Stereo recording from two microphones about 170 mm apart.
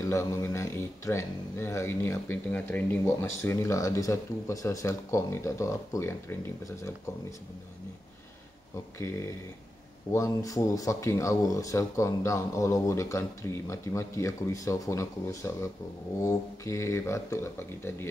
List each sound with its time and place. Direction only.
0.0 s speech: 15° left (ahead or behind)
8.7 s speech: 15° left (ahead or behind)
10.1 s speech: 20° left (ahead or behind)